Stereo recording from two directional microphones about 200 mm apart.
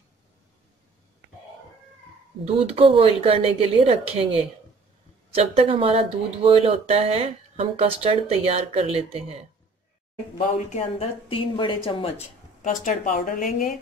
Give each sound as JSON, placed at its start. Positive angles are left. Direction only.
{"t": 2.4, "sound": "speech", "side_deg": -30}
{"t": 5.3, "sound": "speech", "side_deg": -30}
{"t": 10.3, "sound": "speech", "side_deg": 35}
{"t": 12.6, "sound": "speech", "side_deg": 40}